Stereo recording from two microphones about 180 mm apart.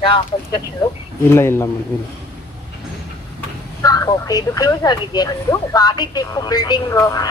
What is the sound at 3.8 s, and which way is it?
Speech, 20° left (ahead or behind).